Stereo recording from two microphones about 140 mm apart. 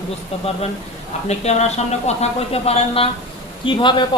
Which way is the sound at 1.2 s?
50° left (ahead or behind).